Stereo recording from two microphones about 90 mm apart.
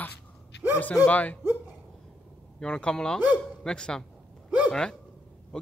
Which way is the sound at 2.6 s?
10° left (ahead or behind).